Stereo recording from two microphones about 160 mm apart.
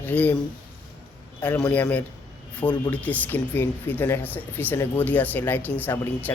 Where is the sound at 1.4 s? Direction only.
5° left (ahead or behind).